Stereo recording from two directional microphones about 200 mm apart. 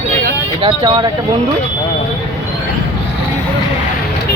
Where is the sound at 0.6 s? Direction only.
25° right (ahead or behind).